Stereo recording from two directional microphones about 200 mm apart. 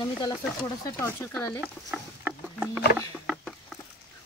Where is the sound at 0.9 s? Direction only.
10° left (ahead or behind).